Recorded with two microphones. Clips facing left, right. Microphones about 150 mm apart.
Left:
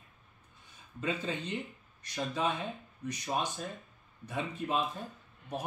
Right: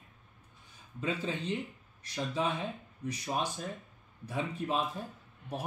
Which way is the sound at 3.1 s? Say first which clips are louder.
Even; 30° right (ahead or behind).